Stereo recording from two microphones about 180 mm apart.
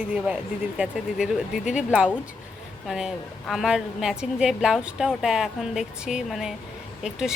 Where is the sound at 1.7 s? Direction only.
5° right (ahead or behind).